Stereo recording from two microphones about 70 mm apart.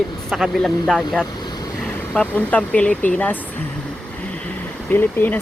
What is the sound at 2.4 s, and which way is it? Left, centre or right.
Speech, centre.